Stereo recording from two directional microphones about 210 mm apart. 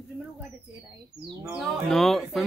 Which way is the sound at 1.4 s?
Centre (ahead or behind).